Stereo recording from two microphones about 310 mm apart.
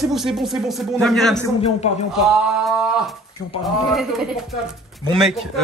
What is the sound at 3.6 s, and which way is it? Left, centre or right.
A man's voice, centre.